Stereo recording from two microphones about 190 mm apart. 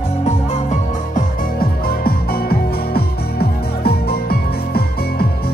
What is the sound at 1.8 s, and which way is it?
Music, 55° left (ahead or behind).